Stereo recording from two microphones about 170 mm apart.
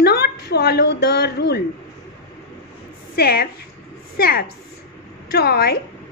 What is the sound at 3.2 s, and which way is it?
A woman's voice, 65° left (ahead or behind).